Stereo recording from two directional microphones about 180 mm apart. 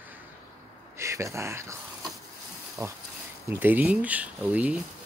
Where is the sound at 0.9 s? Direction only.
15° right (ahead or behind).